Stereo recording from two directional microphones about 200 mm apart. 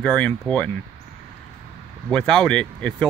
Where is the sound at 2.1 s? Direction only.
5° left (ahead or behind).